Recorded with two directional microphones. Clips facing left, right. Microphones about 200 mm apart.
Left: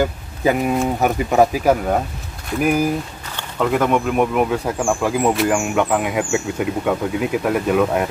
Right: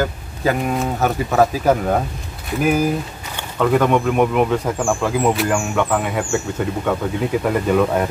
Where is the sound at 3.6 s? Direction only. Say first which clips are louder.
Right 2 dB; centre (ahead or behind).